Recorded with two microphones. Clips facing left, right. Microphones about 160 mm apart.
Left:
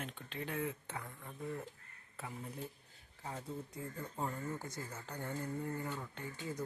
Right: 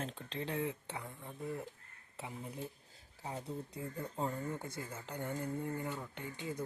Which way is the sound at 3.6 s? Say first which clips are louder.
Right 2 dB; 30° right (ahead or behind).